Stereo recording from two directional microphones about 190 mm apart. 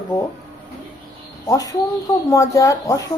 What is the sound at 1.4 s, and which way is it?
A woman's voice, 20° left (ahead or behind).